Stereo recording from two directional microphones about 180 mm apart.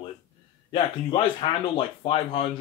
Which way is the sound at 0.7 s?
30° left (ahead or behind).